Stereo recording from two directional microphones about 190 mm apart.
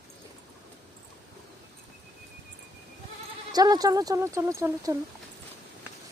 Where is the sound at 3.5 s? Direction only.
20° right (ahead or behind).